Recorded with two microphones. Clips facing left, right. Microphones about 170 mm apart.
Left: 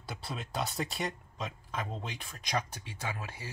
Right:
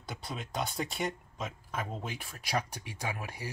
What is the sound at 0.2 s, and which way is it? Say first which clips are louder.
Speech: even; 5° left (ahead or behind).